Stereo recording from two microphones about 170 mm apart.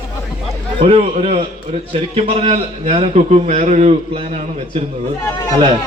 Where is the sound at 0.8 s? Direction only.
35° right (ahead or behind).